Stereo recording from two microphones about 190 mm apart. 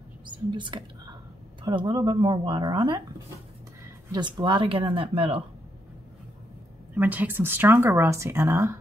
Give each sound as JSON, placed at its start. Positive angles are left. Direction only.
{"t": 0.5, "sound": "speech", "side_deg": -25}
{"t": 4.1, "sound": "speech", "side_deg": -25}
{"t": 7.0, "sound": "speech", "side_deg": -10}